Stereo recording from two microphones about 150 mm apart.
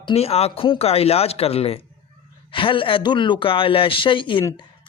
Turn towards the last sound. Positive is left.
turn(degrees=35)  # may be behind; listen again after turning